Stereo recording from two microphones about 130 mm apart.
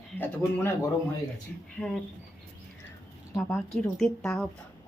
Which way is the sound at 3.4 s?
15° left (ahead or behind).